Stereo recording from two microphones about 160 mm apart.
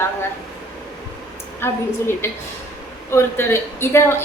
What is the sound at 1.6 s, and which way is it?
A woman's voice, 15° left (ahead or behind).